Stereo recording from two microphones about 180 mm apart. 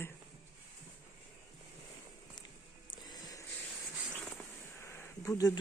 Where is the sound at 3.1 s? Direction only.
20° left (ahead or behind).